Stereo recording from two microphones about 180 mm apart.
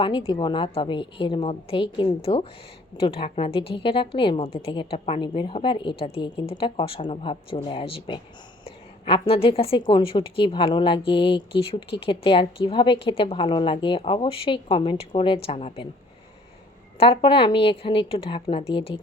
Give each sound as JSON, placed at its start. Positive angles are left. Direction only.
{"t": 0.0, "sound": "a woman's voice", "side_deg": 30}
{"t": 17.0, "sound": "a woman's voice", "side_deg": 30}